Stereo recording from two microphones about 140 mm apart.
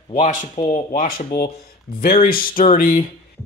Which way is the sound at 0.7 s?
65° left (ahead or behind).